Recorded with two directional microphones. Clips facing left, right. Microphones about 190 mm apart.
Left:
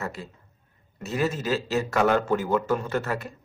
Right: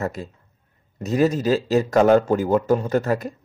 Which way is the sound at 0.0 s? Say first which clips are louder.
Right 7 dB; 40° right (ahead or behind).